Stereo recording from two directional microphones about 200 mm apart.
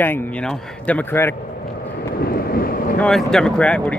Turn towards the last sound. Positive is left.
turn(degrees=5)  # may be behind; listen again after turning